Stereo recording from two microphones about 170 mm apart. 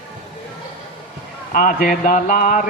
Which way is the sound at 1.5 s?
55° left (ahead or behind).